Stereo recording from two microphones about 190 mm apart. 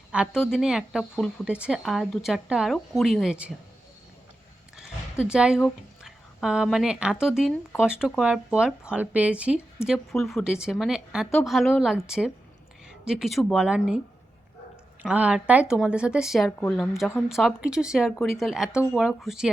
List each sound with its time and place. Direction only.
0.1 s speech: 5° right (ahead or behind)
4.8 s a sound: 5° right (ahead or behind)
6.0 s speech: 5° right (ahead or behind)
15.0 s speech: 5° right (ahead or behind)